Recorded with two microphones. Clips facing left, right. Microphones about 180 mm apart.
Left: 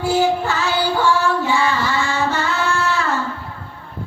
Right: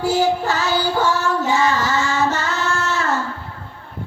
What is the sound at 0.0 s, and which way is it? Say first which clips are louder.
Child singing: even; 40° right (ahead or behind).